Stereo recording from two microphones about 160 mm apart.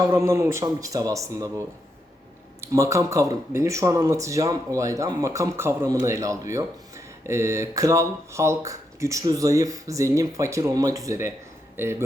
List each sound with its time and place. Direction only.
0.0 s a man's voice: 15° right (ahead or behind)